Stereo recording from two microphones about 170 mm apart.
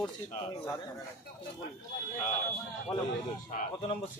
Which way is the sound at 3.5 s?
45° left (ahead or behind).